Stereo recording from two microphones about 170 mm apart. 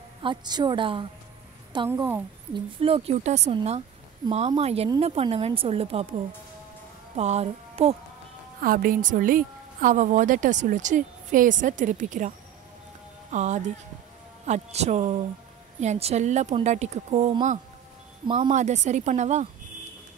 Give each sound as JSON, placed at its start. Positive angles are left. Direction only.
{"t": 0.2, "sound": "a woman's voice", "side_deg": -25}
{"t": 1.9, "sound": "a woman's voice", "side_deg": -15}
{"t": 2.5, "sound": "speech", "side_deg": -35}
{"t": 7.2, "sound": "music", "side_deg": -40}
{"t": 8.6, "sound": "a woman's voice", "side_deg": -55}
{"t": 13.3, "sound": "a woman's voice", "side_deg": -45}
{"t": 18.2, "sound": "speech", "side_deg": -30}
{"t": 18.5, "sound": "a woman's voice", "side_deg": -45}